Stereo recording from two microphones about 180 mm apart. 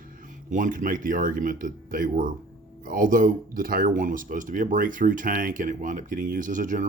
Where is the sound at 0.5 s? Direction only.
45° right (ahead or behind).